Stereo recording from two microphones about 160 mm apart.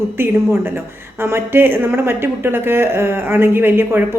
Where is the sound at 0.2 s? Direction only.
15° right (ahead or behind).